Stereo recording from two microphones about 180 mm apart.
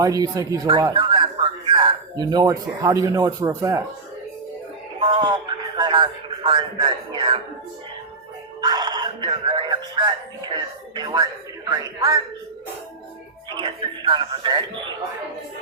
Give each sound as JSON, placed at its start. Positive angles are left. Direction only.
{"t": 0.0, "sound": "speech", "side_deg": -20}
{"t": 4.9, "sound": "a sound", "side_deg": -30}
{"t": 8.6, "sound": "music", "side_deg": -25}
{"t": 10.5, "sound": "a sound", "side_deg": -25}
{"t": 11.7, "sound": "speech", "side_deg": -20}
{"t": 13.5, "sound": "speech", "side_deg": -25}